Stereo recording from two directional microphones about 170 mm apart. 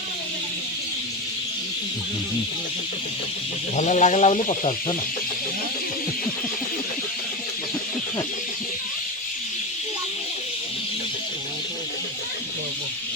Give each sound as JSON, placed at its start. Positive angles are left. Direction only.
{"t": 3.8, "sound": "speech", "side_deg": 45}